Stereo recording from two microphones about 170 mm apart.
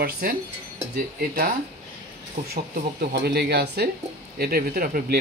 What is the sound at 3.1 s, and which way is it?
Speech, 75° right (ahead or behind).